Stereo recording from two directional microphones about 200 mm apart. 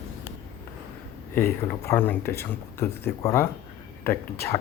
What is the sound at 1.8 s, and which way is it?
Speech, 10° left (ahead or behind).